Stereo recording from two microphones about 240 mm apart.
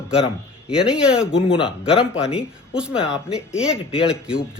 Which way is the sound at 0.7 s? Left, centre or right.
Centre.